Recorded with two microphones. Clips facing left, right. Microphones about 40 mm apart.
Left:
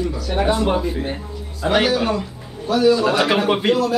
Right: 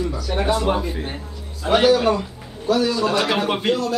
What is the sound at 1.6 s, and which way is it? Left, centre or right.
A man's voice, centre.